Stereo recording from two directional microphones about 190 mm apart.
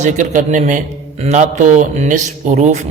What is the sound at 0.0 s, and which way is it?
A man's voice, 40° right (ahead or behind).